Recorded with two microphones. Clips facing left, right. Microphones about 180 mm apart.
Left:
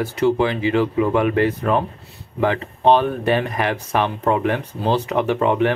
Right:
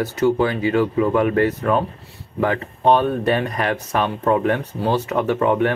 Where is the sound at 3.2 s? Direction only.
20° left (ahead or behind).